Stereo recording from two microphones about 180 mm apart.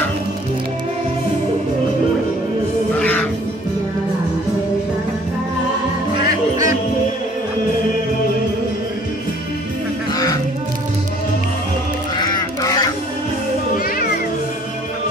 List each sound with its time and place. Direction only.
3.0 s music: 5° left (ahead or behind)
6.5 s music: 20° right (ahead or behind)
10.1 s music: 20° left (ahead or behind)
12.2 s goose: 20° left (ahead or behind)